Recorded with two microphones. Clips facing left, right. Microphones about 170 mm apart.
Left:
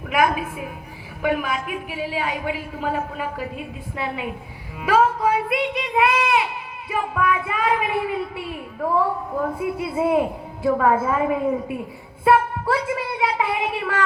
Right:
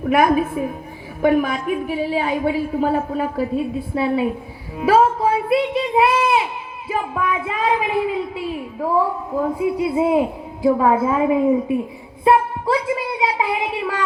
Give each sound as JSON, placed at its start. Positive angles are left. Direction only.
{"t": 0.0, "sound": "a woman's voice", "side_deg": -40}
{"t": 9.6, "sound": "speech", "side_deg": -20}
{"t": 12.2, "sound": "a sound", "side_deg": -20}